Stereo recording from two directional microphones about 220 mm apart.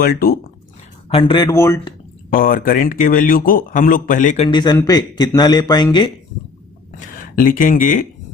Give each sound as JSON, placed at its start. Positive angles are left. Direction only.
{"t": 0.0, "sound": "speech", "side_deg": 40}
{"t": 1.1, "sound": "a man's voice", "side_deg": 20}
{"t": 2.3, "sound": "speech", "side_deg": 40}
{"t": 4.4, "sound": "a man's voice", "side_deg": 20}
{"t": 7.2, "sound": "speech", "side_deg": 40}